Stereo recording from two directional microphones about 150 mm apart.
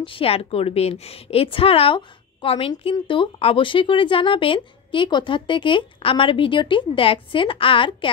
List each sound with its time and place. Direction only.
0.0 s speech: 40° left (ahead or behind)